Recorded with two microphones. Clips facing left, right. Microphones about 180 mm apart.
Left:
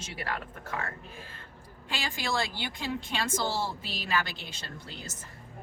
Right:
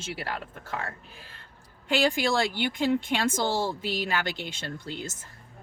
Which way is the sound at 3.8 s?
85° right.